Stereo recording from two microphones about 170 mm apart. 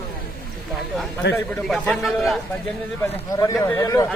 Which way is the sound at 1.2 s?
90° left.